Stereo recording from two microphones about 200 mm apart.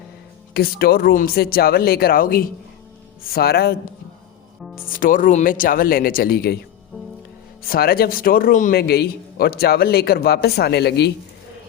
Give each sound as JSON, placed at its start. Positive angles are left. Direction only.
{"t": 0.5, "sound": "a man's voice", "side_deg": 50}
{"t": 4.9, "sound": "a man's voice", "side_deg": 45}
{"t": 7.7, "sound": "a man's voice", "side_deg": 50}